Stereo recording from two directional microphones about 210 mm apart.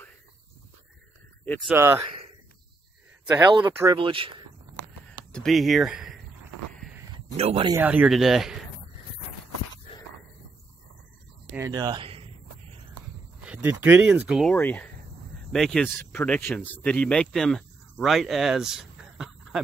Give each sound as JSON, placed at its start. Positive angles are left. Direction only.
{"t": 1.4, "sound": "speech", "side_deg": 10}
{"t": 1.7, "sound": "speech", "side_deg": -10}
{"t": 3.3, "sound": "speech", "side_deg": -20}
{"t": 3.9, "sound": "speech", "side_deg": -25}
{"t": 5.3, "sound": "speech", "side_deg": 0}
{"t": 7.2, "sound": "speech", "side_deg": -30}
{"t": 7.7, "sound": "speech", "side_deg": -10}
{"t": 11.5, "sound": "speech", "side_deg": -15}
{"t": 13.4, "sound": "speech", "side_deg": -5}
{"t": 14.5, "sound": "speech", "side_deg": 10}